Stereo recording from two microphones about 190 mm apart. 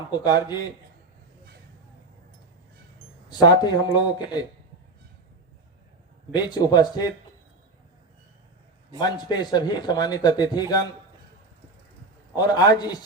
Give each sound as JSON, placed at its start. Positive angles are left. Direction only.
{"t": 0.1, "sound": "speech", "side_deg": 20}
{"t": 3.2, "sound": "speech", "side_deg": 20}
{"t": 6.3, "sound": "speech", "side_deg": 20}
{"t": 9.0, "sound": "speech", "side_deg": 20}
{"t": 12.4, "sound": "speech", "side_deg": 20}